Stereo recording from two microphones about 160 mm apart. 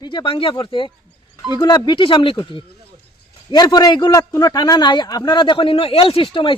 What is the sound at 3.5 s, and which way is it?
A man's voice, 25° left (ahead or behind).